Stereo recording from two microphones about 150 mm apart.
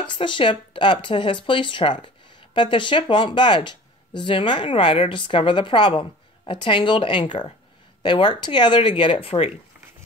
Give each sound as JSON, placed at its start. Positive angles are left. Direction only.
{"t": 0.0, "sound": "speech", "side_deg": 35}